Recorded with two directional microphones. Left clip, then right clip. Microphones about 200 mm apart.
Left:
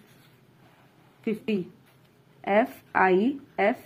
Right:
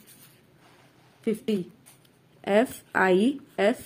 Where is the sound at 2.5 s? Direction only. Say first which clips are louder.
Even; 20° right (ahead or behind).